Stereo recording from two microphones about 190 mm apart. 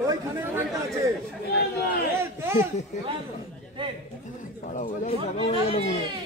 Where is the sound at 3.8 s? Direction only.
25° right (ahead or behind).